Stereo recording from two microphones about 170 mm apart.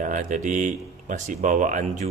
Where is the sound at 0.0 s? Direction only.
50° right (ahead or behind).